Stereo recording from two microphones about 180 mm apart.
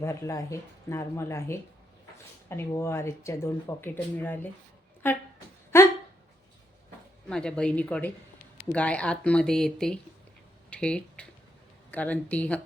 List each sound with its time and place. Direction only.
0.0 s speech: 15° left (ahead or behind)
7.3 s speech: 5° left (ahead or behind)